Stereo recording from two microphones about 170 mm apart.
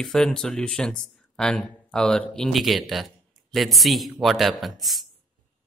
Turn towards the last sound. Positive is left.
turn(degrees=0)  # may be behind; listen again after turning